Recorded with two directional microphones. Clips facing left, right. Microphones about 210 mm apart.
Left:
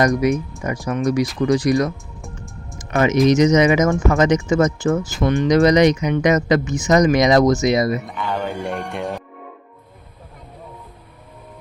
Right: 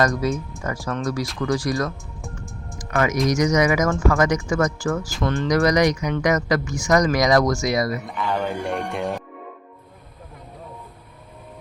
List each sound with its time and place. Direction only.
0.0 s speech: 15° left (ahead or behind)
2.7 s a sound: 25° left (ahead or behind)
3.2 s speech: 20° left (ahead or behind)
8.0 s speech: centre (ahead or behind)